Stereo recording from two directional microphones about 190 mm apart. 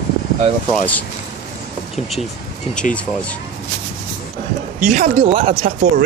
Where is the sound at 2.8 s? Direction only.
40° left (ahead or behind).